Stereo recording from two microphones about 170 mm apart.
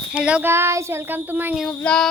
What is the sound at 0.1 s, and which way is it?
Speech, 5° right (ahead or behind).